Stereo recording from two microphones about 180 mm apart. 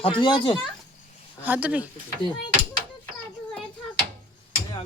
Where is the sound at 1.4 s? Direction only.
10° right (ahead or behind).